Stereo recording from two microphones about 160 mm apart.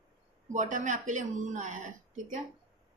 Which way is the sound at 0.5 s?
50° right (ahead or behind).